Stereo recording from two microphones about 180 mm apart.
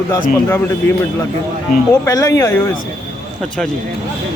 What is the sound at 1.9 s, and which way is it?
Speech, 15° left (ahead or behind).